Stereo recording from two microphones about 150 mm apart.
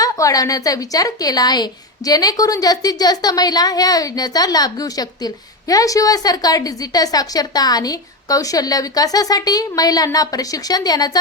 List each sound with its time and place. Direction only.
0.0 s a woman's voice: 25° left (ahead or behind)